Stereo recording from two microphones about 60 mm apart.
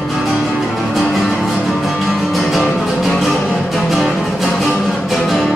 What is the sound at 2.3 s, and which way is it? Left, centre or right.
Music, centre.